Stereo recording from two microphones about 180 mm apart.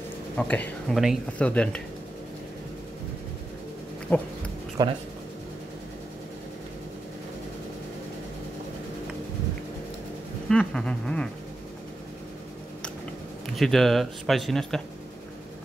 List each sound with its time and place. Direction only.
0.4 s speech: 5° left (ahead or behind)
4.1 s speech: 10° left (ahead or behind)
4.8 s speech: 25° right (ahead or behind)
10.5 s speech: 5° left (ahead or behind)
13.6 s speech: centre (ahead or behind)